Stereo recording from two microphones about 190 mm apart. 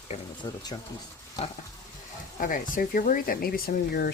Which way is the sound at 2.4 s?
45° left (ahead or behind).